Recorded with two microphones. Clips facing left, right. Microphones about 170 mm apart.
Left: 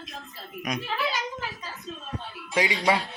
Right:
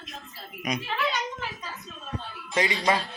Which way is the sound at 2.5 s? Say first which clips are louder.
Left 1 dB; 10° left (ahead or behind).